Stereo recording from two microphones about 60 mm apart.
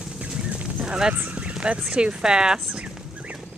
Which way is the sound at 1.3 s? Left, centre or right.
Centre.